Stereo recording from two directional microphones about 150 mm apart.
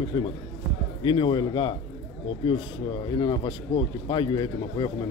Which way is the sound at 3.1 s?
30° left (ahead or behind).